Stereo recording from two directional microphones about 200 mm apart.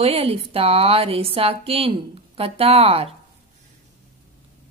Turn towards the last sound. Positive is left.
turn(degrees=-30)  # may be behind; listen again after turning